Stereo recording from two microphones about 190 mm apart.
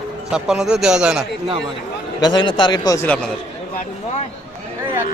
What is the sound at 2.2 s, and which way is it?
A man's voice, 20° left (ahead or behind).